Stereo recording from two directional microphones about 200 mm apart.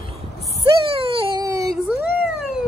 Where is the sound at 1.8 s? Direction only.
5° right (ahead or behind).